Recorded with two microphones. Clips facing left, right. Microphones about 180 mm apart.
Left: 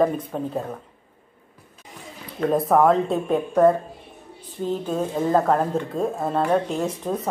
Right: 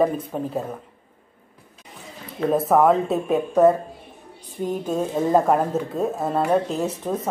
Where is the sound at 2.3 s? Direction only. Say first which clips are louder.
Even; 5° right (ahead or behind).